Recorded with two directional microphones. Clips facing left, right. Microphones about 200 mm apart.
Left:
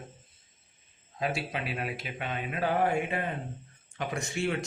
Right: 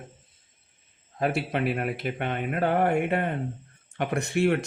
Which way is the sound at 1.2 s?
60° right (ahead or behind).